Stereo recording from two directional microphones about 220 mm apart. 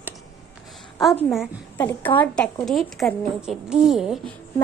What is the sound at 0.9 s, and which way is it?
Speech, centre (ahead or behind).